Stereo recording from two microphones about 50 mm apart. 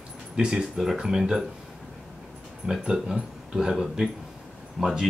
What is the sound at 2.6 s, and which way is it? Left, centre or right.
Speech, centre.